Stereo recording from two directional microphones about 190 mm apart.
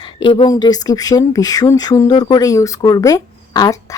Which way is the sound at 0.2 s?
25° left (ahead or behind).